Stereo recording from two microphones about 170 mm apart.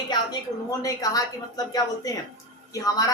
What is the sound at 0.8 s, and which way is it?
Speech, 20° left (ahead or behind).